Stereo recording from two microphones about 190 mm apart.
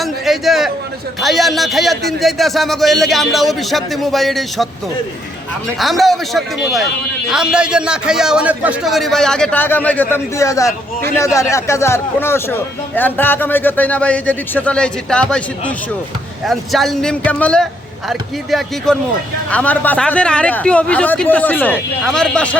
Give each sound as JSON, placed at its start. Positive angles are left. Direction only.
{"t": 0.0, "sound": "a man's voice", "side_deg": 0}
{"t": 5.8, "sound": "a man's voice", "side_deg": 0}
{"t": 16.5, "sound": "a man's voice", "side_deg": 0}